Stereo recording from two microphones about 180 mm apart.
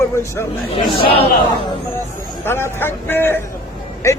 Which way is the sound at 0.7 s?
30° left (ahead or behind).